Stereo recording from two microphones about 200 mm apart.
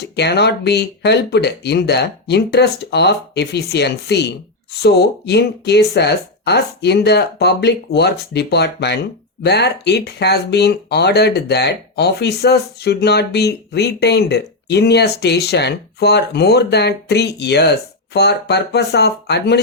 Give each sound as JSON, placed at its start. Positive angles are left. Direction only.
{"t": 0.2, "sound": "speech", "side_deg": 55}